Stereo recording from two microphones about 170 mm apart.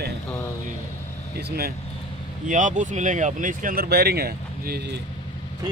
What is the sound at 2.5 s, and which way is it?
Speech, 45° right (ahead or behind).